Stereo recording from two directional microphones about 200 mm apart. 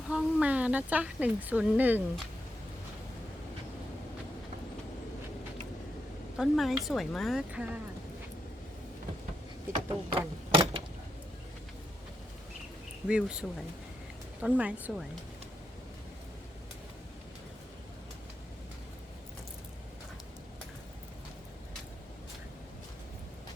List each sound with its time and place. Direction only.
0.1 s speech: 5° right (ahead or behind)
6.3 s speech: centre (ahead or behind)
9.7 s a sound: 25° right (ahead or behind)
13.1 s speech: 5° right (ahead or behind)
14.4 s speech: 5° right (ahead or behind)